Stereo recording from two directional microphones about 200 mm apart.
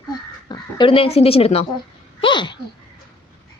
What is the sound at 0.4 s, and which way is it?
Speech, 25° left (ahead or behind).